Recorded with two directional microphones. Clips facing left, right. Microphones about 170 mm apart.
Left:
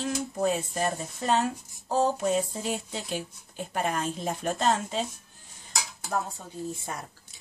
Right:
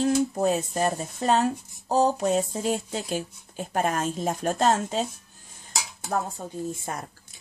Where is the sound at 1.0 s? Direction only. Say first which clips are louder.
Right 3 dB; centre (ahead or behind).